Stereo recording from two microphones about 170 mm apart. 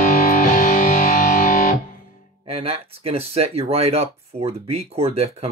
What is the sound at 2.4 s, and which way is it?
Speech, 35° right (ahead or behind).